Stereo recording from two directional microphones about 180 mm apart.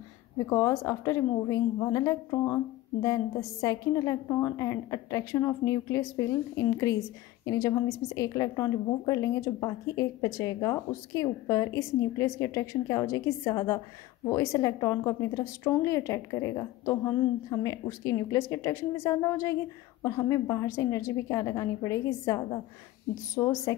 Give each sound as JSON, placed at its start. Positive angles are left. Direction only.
{"t": 0.5, "sound": "a woman's voice", "side_deg": 15}